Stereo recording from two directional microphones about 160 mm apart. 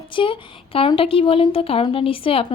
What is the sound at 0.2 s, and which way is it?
A woman's voice, 35° left (ahead or behind).